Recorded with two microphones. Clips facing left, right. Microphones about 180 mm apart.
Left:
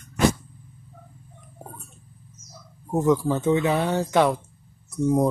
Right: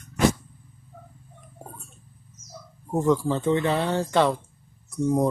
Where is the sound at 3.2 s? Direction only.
10° left (ahead or behind).